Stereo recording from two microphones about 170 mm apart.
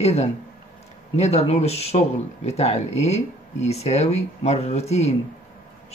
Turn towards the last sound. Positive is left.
turn(degrees=40)  # may be behind; listen again after turning